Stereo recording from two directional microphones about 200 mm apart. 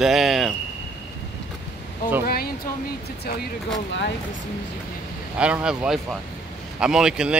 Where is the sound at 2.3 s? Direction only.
50° left (ahead or behind).